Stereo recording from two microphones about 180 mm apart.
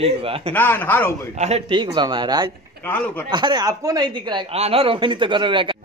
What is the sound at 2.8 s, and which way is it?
Speech, 10° left (ahead or behind).